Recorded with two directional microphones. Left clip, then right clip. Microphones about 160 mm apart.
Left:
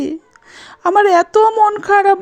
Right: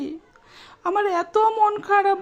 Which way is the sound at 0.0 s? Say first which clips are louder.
Left 10 dB; 40° left (ahead or behind).